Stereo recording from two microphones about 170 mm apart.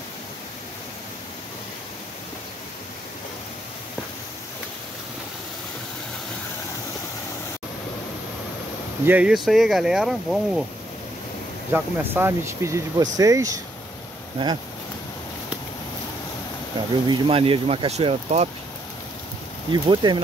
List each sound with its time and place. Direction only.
9.0 s speech: 10° right (ahead or behind)
11.7 s speech: 10° right (ahead or behind)
17.1 s speech: 35° right (ahead or behind)
19.7 s speech: 25° right (ahead or behind)